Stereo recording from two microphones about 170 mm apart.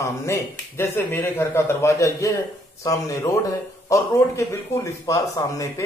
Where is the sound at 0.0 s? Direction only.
15° left (ahead or behind).